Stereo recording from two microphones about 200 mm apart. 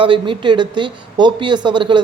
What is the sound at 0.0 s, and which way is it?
A woman's voice, 25° right (ahead or behind).